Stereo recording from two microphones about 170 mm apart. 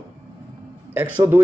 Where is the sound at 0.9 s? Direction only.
10° right (ahead or behind).